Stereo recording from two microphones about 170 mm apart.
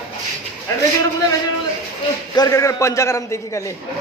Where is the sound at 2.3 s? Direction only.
20° left (ahead or behind).